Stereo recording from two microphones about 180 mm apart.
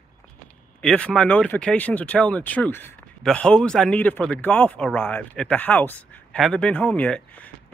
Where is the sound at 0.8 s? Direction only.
5° left (ahead or behind).